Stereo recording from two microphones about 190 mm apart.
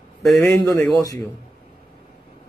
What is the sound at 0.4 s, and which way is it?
Speech, 15° left (ahead or behind).